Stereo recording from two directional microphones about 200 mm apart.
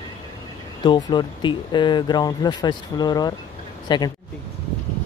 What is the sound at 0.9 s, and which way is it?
Speech, 20° left (ahead or behind).